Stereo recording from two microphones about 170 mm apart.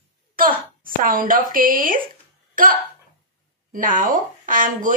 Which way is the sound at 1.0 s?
55° right (ahead or behind).